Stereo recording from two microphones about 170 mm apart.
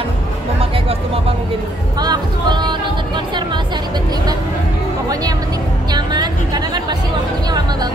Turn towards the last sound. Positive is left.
turn(degrees=-25)  # may be behind; listen again after turning